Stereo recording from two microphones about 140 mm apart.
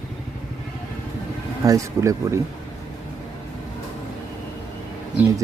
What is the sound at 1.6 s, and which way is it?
Speech, 20° right (ahead or behind).